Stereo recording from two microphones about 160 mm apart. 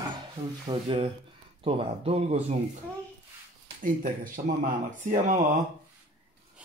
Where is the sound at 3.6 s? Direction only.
55° right (ahead or behind).